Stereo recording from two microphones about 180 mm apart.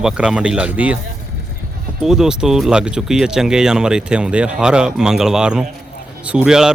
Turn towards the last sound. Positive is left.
turn(degrees=-5)  # may be behind; listen again after turning